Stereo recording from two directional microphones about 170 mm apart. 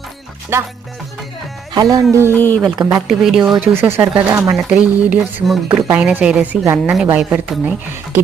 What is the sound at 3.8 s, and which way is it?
A woman's voice, 15° right (ahead or behind).